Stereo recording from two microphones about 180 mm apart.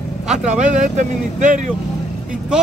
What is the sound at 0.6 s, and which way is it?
Speech, 45° right (ahead or behind).